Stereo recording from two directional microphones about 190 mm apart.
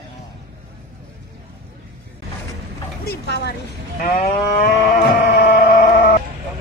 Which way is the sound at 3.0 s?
60° left (ahead or behind).